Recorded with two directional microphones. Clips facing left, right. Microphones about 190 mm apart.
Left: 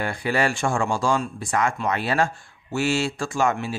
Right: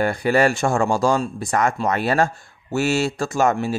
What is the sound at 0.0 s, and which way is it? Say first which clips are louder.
Speech: right 6 dB; 45° right (ahead or behind).